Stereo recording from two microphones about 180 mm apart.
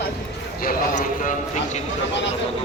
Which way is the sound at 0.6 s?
45° left (ahead or behind).